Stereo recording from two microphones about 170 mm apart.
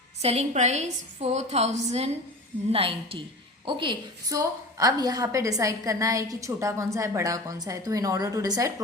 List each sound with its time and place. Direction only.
0.2 s a woman's voice: 40° right (ahead or behind); by 8.7 s 20° right (ahead or behind)